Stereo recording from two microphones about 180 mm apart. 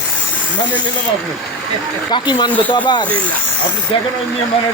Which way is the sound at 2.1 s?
25° left (ahead or behind).